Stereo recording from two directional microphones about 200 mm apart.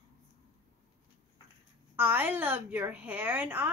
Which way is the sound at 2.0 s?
10° right (ahead or behind).